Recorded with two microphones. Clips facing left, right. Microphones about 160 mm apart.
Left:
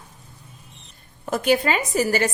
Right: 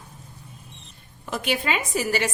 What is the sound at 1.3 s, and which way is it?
A woman's voice, 45° left (ahead or behind).